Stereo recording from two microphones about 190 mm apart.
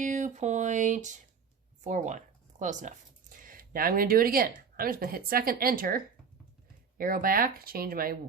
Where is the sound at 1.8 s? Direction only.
40° right (ahead or behind).